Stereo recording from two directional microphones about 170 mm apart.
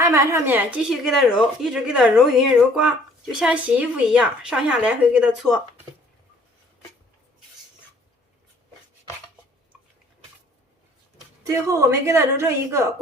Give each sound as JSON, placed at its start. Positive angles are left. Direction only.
{"t": 0.0, "sound": "speech", "side_deg": -15}
{"t": 11.4, "sound": "a woman's voice", "side_deg": -20}